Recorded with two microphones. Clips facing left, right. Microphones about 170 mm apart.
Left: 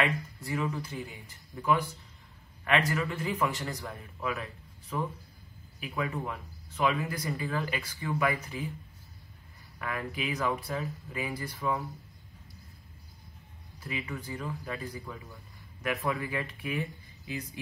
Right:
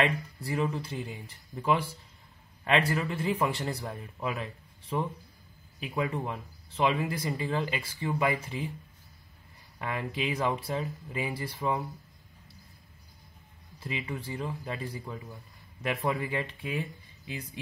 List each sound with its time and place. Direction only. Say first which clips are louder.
0.0 s speech: right 2 dB; 30° right (ahead or behind)
9.8 s speech: right 2 dB; 25° right (ahead or behind)
13.7 s speech: right 1 dB; 30° right (ahead or behind)